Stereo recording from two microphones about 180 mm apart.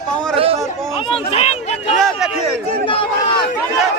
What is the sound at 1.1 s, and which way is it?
Speech, 35° left (ahead or behind).